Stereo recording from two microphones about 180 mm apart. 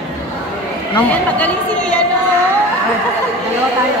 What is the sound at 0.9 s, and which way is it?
A woman's voice, 10° left (ahead or behind).